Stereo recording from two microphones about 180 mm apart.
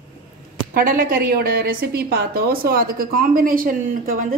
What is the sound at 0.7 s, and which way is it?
A woman's voice, 50° right (ahead or behind).